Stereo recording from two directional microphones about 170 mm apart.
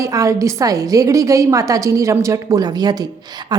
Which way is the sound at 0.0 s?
20° right (ahead or behind).